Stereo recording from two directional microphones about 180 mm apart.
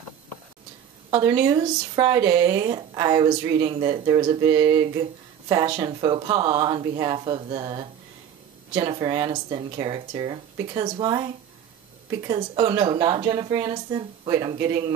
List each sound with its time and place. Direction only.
1.1 s speech: 30° right (ahead or behind)